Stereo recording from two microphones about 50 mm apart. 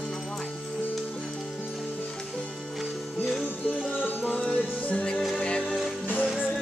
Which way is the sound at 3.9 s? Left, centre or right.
Left.